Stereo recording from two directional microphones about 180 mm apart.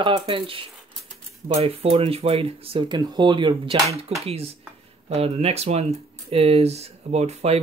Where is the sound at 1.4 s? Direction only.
35° right (ahead or behind).